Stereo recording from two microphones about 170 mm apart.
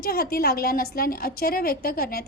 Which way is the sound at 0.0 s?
60° left (ahead or behind).